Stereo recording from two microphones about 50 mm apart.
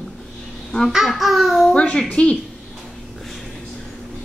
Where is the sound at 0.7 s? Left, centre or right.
Centre.